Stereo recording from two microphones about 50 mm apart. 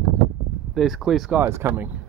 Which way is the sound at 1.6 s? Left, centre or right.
Right.